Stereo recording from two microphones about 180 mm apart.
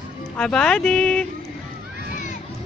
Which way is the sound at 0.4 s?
5° left (ahead or behind).